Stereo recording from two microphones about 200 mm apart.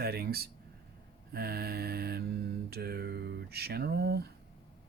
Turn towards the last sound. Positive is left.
turn(degrees=-50)  # may be behind; listen again after turning